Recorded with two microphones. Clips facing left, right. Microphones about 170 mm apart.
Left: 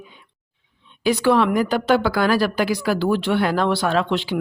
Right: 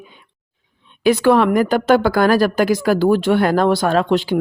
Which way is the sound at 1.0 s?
50° right (ahead or behind).